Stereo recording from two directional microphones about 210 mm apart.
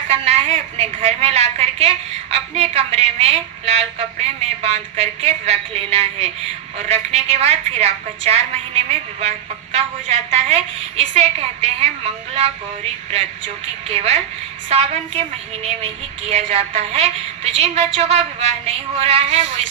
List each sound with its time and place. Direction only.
0.1 s a woman's voice: 30° right (ahead or behind)
13.8 s a woman's voice: 30° right (ahead or behind)